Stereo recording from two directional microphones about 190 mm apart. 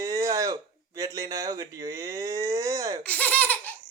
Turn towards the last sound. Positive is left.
turn(degrees=10)  # may be behind; listen again after turning